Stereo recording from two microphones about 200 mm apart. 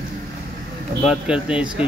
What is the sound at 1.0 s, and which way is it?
Speech, 5° right (ahead or behind).